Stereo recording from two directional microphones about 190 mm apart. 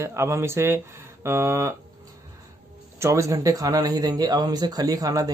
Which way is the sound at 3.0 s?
15° right (ahead or behind).